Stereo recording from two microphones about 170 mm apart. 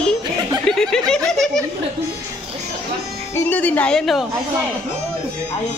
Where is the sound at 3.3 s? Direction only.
10° left (ahead or behind).